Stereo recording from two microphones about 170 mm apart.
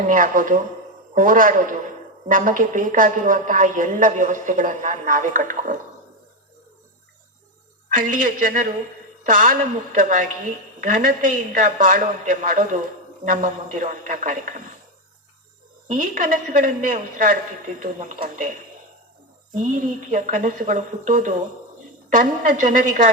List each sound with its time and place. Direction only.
0.0 s a woman's voice: 55° right (ahead or behind)
7.9 s a woman's voice: 50° right (ahead or behind)
15.9 s a woman's voice: 50° right (ahead or behind)